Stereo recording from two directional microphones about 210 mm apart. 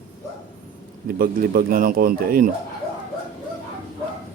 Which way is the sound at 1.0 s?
40° right (ahead or behind).